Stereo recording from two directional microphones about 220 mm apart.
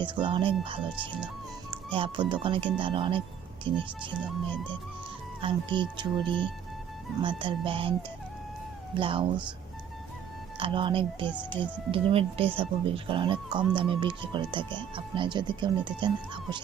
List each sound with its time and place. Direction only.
0.0 s speech: 20° right (ahead or behind)
5.4 s speech: 20° right (ahead or behind)
7.2 s speech: 20° right (ahead or behind)
9.0 s speech: 25° right (ahead or behind)
10.6 s speech: 20° right (ahead or behind)